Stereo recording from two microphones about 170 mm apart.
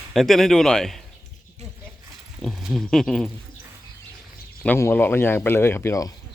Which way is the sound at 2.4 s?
Centre (ahead or behind).